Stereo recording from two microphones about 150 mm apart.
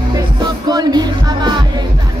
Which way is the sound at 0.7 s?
25° right (ahead or behind).